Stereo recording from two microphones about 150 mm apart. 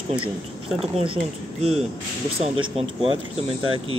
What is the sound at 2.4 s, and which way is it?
Speech, 35° right (ahead or behind).